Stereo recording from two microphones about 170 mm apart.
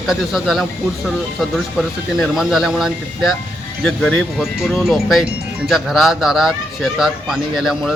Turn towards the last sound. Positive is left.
turn(degrees=0)  # may be behind; listen again after turning